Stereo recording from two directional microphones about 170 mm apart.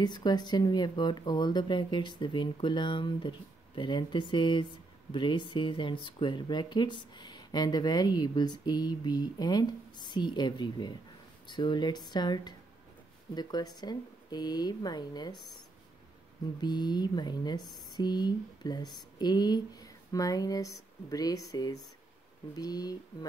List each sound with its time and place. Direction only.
0.0 s speech: 25° left (ahead or behind)
16.6 s speech: 25° left (ahead or behind)